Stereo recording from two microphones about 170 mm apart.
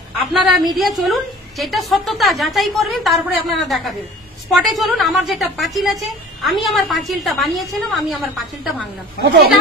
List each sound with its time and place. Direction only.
0.3 s a woman's voice: centre (ahead or behind)